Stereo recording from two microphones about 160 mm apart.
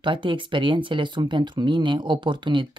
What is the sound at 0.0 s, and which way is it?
Speech, 30° right (ahead or behind).